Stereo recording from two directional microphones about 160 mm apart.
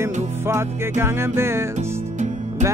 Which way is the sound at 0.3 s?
15° right (ahead or behind).